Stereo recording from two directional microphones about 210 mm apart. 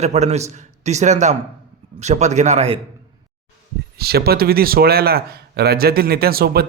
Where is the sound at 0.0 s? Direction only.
30° right (ahead or behind).